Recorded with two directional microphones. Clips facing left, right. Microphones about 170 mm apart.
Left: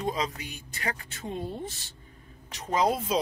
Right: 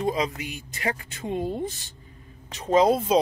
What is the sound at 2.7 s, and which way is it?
Speech, 25° right (ahead or behind).